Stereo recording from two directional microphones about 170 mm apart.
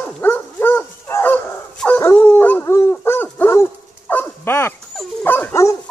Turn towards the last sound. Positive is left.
turn(degrees=15)  # may be behind; listen again after turning